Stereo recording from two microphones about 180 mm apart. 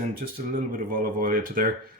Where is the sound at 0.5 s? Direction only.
50° right (ahead or behind).